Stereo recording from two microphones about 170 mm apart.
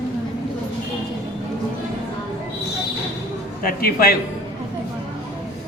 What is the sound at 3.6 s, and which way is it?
Speech, 60° left (ahead or behind).